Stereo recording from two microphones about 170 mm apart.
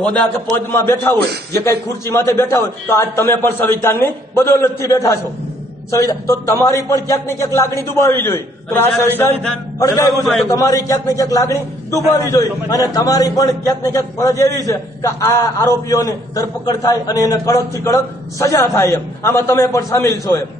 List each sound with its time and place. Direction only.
0.7 s a man's voice: 15° left (ahead or behind)